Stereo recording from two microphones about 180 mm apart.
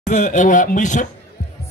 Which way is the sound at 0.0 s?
45° left (ahead or behind).